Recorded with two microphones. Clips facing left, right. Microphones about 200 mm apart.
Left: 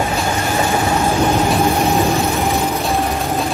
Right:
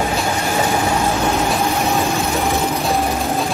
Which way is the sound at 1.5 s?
Centre (ahead or behind).